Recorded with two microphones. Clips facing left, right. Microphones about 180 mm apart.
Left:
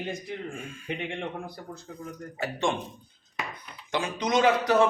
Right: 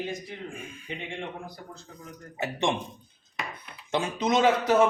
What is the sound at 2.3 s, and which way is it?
Speech, 20° right (ahead or behind).